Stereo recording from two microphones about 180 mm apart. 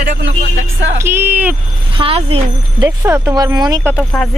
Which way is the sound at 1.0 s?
10° right (ahead or behind).